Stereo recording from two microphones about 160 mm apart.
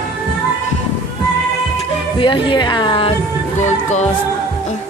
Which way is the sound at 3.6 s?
45° left (ahead or behind).